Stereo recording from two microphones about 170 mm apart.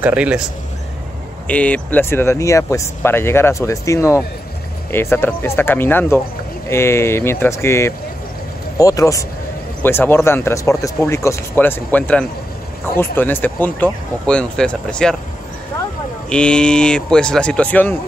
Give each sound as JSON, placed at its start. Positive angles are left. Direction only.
{"t": 0.0, "sound": "speech", "side_deg": -5}
{"t": 1.5, "sound": "a man's voice", "side_deg": 10}
{"t": 16.3, "sound": "a man's voice", "side_deg": 5}